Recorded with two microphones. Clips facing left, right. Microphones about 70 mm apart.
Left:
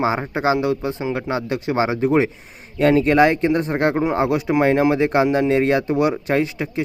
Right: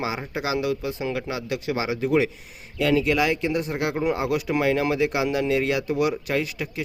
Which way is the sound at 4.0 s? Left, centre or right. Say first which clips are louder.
Left 5 dB; left.